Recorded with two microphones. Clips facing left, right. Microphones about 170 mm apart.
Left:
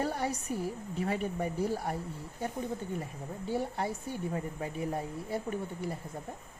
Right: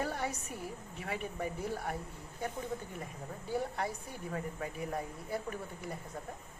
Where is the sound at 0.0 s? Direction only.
35° left (ahead or behind).